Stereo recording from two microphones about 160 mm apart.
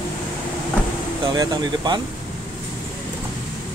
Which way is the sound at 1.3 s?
25° right (ahead or behind).